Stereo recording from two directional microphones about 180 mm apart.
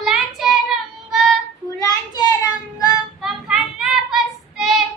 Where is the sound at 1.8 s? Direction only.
20° left (ahead or behind).